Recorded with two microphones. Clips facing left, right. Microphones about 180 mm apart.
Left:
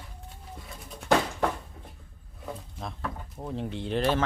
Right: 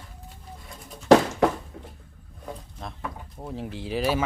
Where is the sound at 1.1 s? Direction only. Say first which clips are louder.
Right 8 dB; 80° right.